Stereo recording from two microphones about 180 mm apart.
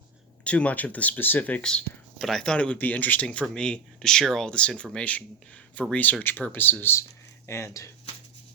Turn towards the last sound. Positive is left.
turn(degrees=15)  # may be behind; listen again after turning